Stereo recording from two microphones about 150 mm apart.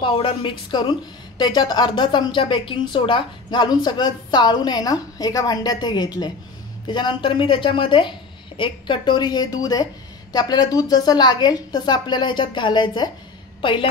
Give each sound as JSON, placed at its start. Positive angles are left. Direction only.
{"t": 0.0, "sound": "a woman's voice", "side_deg": 35}